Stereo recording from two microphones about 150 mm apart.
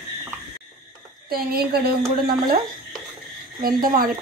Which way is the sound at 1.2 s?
90° right.